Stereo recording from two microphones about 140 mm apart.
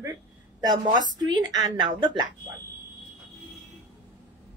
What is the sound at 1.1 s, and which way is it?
A woman's voice, 30° right (ahead or behind).